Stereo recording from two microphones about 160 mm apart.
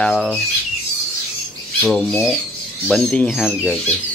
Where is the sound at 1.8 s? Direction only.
10° left (ahead or behind).